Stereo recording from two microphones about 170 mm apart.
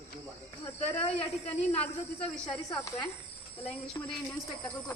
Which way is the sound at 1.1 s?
35° left (ahead or behind).